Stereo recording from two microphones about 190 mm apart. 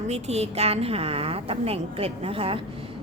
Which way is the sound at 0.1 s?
35° right (ahead or behind).